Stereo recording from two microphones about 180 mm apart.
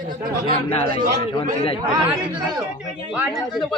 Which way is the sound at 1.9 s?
25° right (ahead or behind).